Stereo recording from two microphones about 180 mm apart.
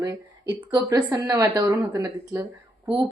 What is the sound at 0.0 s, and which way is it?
A woman's voice, 20° right (ahead or behind).